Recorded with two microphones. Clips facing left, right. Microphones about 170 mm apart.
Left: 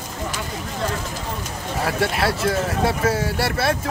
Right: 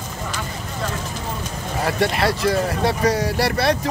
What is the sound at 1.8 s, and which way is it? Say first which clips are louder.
Speech: right 2 dB; centre (ahead or behind).